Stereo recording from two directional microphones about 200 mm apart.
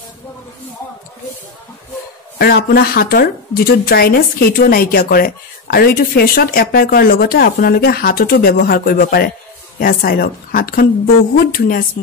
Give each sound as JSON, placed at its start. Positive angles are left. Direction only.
{"t": 2.3, "sound": "speech", "side_deg": 50}